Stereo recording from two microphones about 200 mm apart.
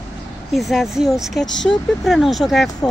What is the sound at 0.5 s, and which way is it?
Speech, centre (ahead or behind).